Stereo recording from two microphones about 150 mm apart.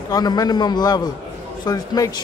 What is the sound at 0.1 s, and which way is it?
A man's voice, 25° left (ahead or behind).